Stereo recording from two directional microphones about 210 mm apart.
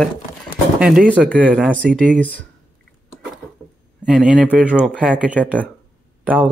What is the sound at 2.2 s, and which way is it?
Speech, 5° left (ahead or behind).